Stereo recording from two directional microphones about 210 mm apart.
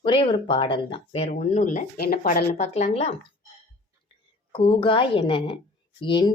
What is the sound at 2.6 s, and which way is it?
Speech, 30° left (ahead or behind).